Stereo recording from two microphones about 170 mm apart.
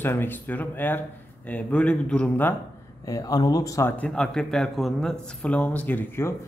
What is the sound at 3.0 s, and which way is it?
A man's voice, 20° left (ahead or behind).